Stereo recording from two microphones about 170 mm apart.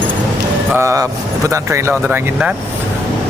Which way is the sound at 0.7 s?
20° right (ahead or behind).